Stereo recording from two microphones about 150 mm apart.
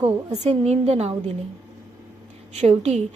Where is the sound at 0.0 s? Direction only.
45° right (ahead or behind).